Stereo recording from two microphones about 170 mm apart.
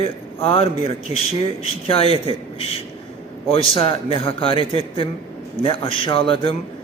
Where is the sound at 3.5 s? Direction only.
35° left (ahead or behind).